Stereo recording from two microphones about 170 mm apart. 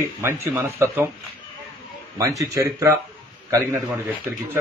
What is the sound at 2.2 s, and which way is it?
Speech, 20° right (ahead or behind).